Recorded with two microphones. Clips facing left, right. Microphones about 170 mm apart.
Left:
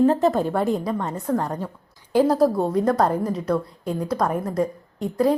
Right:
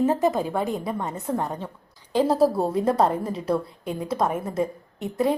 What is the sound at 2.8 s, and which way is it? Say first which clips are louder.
Speech: even; 30° right (ahead or behind).